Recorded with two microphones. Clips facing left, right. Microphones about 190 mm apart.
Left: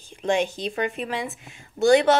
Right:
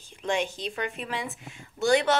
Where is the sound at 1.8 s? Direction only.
25° left (ahead or behind).